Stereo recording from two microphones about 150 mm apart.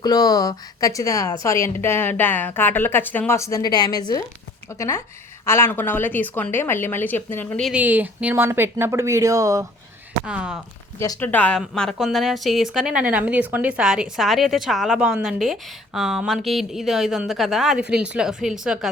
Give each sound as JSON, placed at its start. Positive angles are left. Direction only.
{"t": 0.0, "sound": "a woman's voice", "side_deg": 25}
{"t": 7.6, "sound": "speech", "side_deg": -10}
{"t": 10.2, "sound": "speech", "side_deg": -5}
{"t": 11.2, "sound": "a woman's voice", "side_deg": 10}